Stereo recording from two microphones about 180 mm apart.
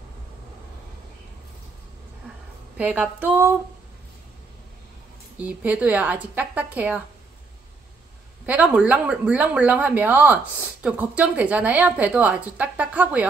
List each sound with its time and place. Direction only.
2.8 s speech: 10° right (ahead or behind)
5.4 s speech: 10° right (ahead or behind)
8.5 s speech: 5° right (ahead or behind)